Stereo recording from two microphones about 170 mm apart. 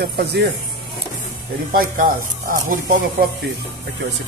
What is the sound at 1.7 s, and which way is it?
Speech, 55° right (ahead or behind).